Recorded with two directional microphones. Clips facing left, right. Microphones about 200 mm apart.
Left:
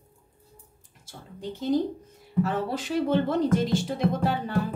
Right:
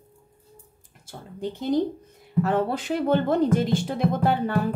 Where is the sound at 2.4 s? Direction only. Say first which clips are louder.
Right 3 dB; 55° right (ahead or behind).